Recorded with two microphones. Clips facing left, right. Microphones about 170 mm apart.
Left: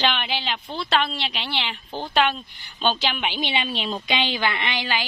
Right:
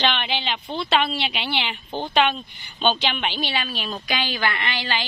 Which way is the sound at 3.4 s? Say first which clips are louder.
Left 1 dB; 20° left (ahead or behind).